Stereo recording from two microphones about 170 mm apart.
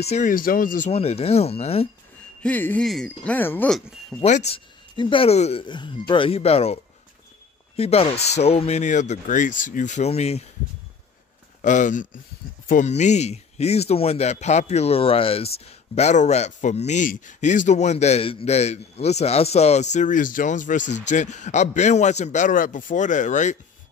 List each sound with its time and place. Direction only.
0.0 s speech: 40° left (ahead or behind)
0.3 s speech: 55° left (ahead or behind)
0.9 s speech: 35° left (ahead or behind)
2.4 s speech: 10° left (ahead or behind)
4.2 s speech: 40° left (ahead or behind)
11.6 s speech: 50° left (ahead or behind)